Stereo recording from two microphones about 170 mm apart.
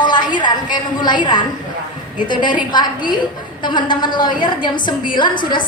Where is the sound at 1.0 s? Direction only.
25° left (ahead or behind).